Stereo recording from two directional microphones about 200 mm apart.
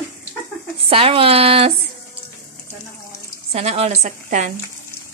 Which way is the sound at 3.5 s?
30° right (ahead or behind).